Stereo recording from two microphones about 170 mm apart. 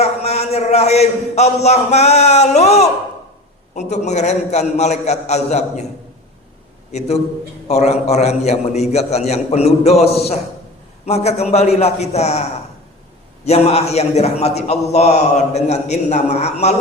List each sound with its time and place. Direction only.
0.0 s a man's voice: 40° left (ahead or behind)
6.9 s a man's voice: 40° left (ahead or behind)